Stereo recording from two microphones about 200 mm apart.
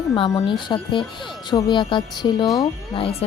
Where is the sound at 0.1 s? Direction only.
20° left (ahead or behind).